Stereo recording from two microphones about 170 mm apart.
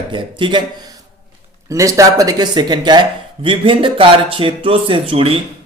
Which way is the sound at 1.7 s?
20° right (ahead or behind).